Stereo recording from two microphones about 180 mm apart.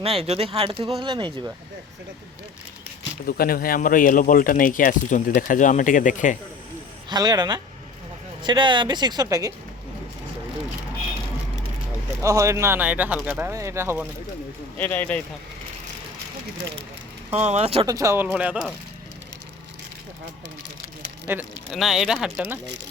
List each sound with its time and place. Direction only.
0.0 s speech: 35° right (ahead or behind)
3.2 s speech: 55° left (ahead or behind)
7.1 s speech: 20° right (ahead or behind)
12.2 s speech: 15° right (ahead or behind)
14.8 s speech: 10° left (ahead or behind)
17.4 s speech: 35° right (ahead or behind)
17.8 s speech: 15° right (ahead or behind)
21.3 s speech: 10° right (ahead or behind)
21.7 s speech: centre (ahead or behind)